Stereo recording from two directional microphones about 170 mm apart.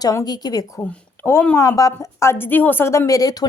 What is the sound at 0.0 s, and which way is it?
A woman's voice, 20° left (ahead or behind).